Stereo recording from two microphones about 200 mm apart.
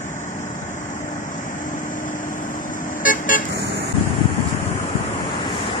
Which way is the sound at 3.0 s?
45° left (ahead or behind).